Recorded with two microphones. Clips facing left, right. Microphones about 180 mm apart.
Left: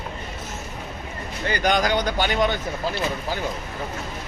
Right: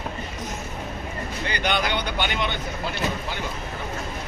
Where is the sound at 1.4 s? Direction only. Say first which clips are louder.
Left 4 dB; 40° left (ahead or behind).